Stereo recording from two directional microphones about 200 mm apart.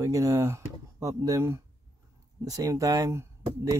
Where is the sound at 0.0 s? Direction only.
15° right (ahead or behind).